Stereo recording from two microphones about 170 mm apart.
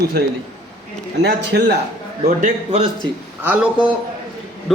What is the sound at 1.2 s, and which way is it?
Speech, 90° right.